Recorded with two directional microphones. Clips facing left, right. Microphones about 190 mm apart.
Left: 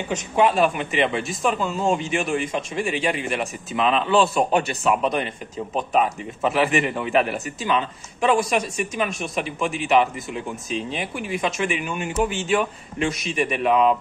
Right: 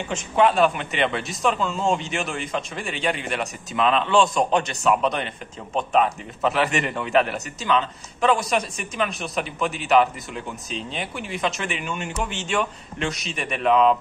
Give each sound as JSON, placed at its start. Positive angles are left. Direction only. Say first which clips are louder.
{"t": 0.4, "sound": "a man's voice", "louder": "even", "side_deg": 5}